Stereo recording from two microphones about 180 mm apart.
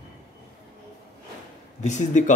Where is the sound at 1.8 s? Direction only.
40° left (ahead or behind).